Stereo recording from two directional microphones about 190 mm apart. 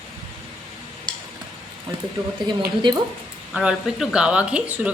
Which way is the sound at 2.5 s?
25° right (ahead or behind).